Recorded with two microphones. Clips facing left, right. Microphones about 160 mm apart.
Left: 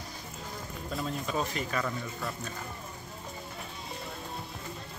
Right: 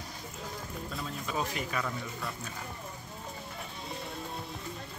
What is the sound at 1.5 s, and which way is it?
Speech, 10° right (ahead or behind).